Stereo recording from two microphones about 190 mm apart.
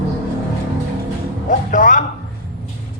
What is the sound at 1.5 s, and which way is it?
Music, 45° left (ahead or behind).